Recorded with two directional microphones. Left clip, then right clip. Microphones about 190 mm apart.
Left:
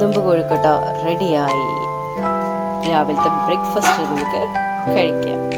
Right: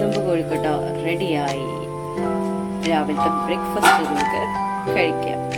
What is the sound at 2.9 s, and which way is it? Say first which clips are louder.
Speech: left 4 dB; 20° left (ahead or behind).